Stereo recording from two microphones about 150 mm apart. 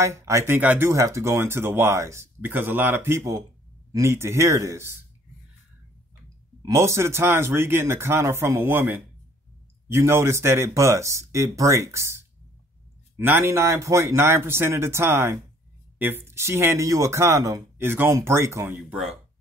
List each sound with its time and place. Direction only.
0.0 s speech: 20° right (ahead or behind)
6.6 s speech: 20° right (ahead or behind)
13.2 s speech: 15° right (ahead or behind)